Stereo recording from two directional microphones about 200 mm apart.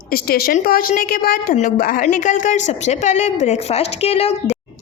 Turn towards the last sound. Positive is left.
turn(degrees=30)  # may be behind; listen again after turning